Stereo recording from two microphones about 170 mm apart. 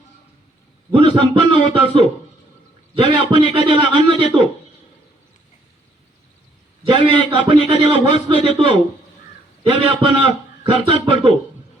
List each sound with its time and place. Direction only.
0.9 s a man's voice: 30° right (ahead or behind)
6.8 s a man's voice: 30° right (ahead or behind)